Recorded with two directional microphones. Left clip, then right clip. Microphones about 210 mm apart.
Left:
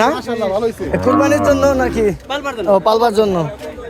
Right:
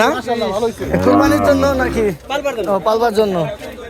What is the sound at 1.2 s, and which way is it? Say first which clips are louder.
Speech: left 2 dB; 5° left (ahead or behind).